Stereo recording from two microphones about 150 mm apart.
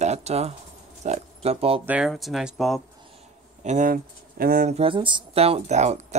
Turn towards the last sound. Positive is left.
turn(degrees=-50)  # may be behind; listen again after turning